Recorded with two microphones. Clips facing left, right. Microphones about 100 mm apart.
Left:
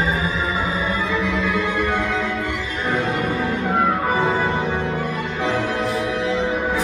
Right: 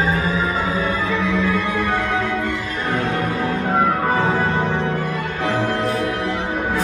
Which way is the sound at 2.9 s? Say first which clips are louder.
Even; 10° left (ahead or behind).